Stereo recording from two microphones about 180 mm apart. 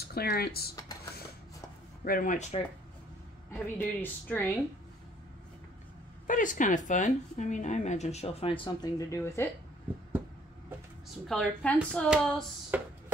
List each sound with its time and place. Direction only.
0.0 s speech: 60° left (ahead or behind)
2.0 s a woman's voice: 50° left (ahead or behind)
3.5 s speech: 10° left (ahead or behind)
6.2 s a woman's voice: 45° left (ahead or behind); by 8.9 s 30° left (ahead or behind)
9.1 s speech: 15° left (ahead or behind)
11.2 s speech: 5° left (ahead or behind)
12.7 s a sound: 10° right (ahead or behind)